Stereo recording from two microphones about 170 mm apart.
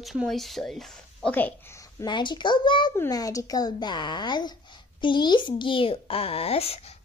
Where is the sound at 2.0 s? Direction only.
25° left (ahead or behind).